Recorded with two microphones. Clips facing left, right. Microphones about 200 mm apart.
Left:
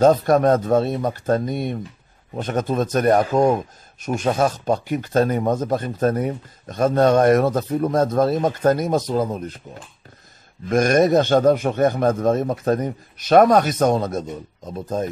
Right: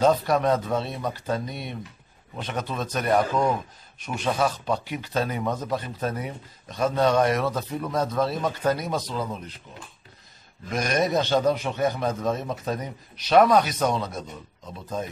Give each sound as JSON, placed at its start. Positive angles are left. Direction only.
{"t": 0.0, "sound": "a man's voice", "side_deg": 45}